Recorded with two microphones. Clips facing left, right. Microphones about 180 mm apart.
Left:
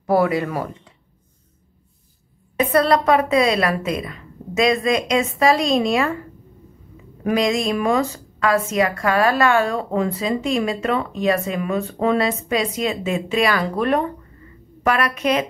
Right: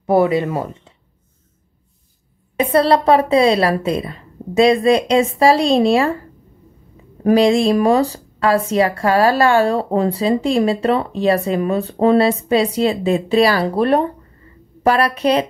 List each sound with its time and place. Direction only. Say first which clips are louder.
0.0 s speech: right 3 dB; 20° right (ahead or behind)
2.6 s a woman's voice: right 3 dB; 30° right (ahead or behind)
7.2 s a woman's voice: right 7 dB; 30° right (ahead or behind)